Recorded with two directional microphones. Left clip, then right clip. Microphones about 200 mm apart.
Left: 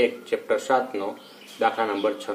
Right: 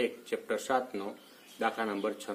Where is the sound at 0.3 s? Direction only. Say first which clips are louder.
Left 9 dB; 45° right (ahead or behind).